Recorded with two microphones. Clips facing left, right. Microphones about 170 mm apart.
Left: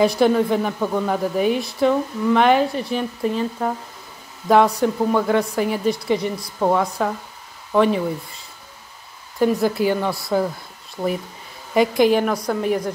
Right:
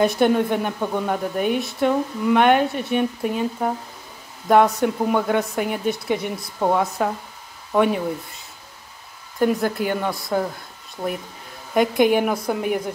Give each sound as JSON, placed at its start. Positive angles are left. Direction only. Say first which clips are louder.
{"t": 0.0, "sound": "speech", "louder": "left 1 dB", "side_deg": 0}
{"t": 9.4, "sound": "speech", "louder": "left 2 dB", "side_deg": 5}
{"t": 11.7, "sound": "speech", "louder": "left 1 dB", "side_deg": 0}